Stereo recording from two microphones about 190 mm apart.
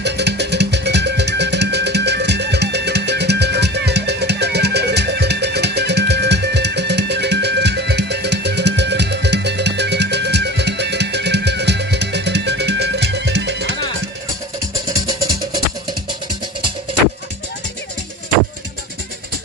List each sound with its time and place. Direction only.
0.0 s music: 60° right (ahead or behind)